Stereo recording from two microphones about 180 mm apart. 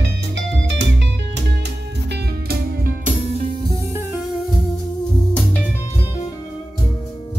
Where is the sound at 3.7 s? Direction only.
15° right (ahead or behind).